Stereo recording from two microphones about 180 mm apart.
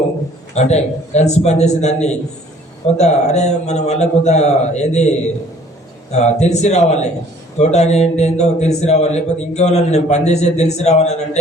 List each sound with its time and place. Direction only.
0.5 s a man's voice: 40° left (ahead or behind)
6.1 s a man's voice: 40° left (ahead or behind)